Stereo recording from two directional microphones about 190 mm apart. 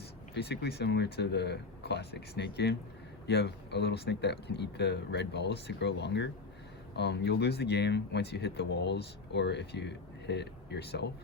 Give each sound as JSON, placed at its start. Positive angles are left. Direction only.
{"t": 0.3, "sound": "speech", "side_deg": 60}